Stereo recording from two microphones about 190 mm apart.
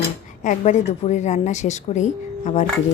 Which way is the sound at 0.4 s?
35° left (ahead or behind).